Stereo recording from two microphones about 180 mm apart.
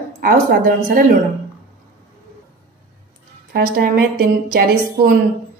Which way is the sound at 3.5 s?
65° right (ahead or behind).